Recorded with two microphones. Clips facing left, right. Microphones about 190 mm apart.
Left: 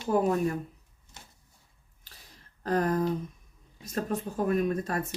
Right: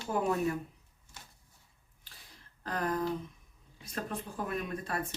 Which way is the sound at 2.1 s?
45° left (ahead or behind).